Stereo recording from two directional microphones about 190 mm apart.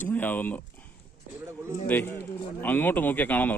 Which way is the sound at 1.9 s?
10° left (ahead or behind).